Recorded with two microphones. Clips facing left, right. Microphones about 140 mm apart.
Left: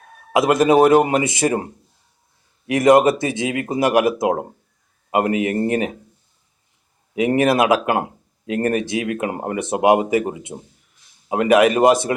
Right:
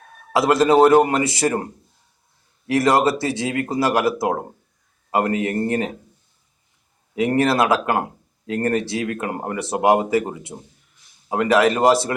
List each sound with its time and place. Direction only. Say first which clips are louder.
0.3 s speech: left 1 dB; 20° left (ahead or behind)
2.6 s speech: left 4 dB; 20° left (ahead or behind)
7.2 s speech: left 2 dB; 20° left (ahead or behind)